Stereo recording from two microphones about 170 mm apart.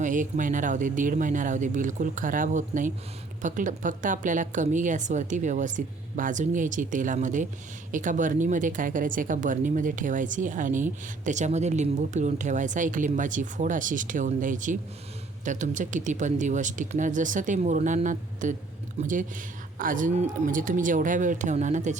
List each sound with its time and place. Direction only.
0.0 s speech: 50° right (ahead or behind)